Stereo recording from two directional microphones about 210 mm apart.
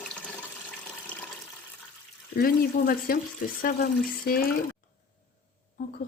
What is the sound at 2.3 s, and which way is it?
Speech, 45° left (ahead or behind).